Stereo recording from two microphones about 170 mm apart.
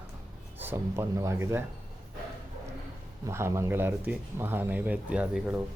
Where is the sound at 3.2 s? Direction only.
15° right (ahead or behind).